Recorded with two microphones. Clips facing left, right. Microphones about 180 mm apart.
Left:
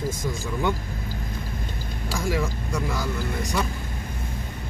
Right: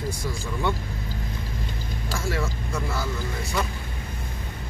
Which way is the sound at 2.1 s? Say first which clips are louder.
Left 3 dB; 15° left (ahead or behind).